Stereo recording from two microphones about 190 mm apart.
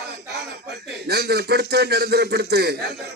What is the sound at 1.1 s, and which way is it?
A man's voice, 60° right (ahead or behind).